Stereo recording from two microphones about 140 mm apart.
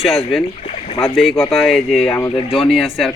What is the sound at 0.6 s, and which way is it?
Boat, 50° left (ahead or behind).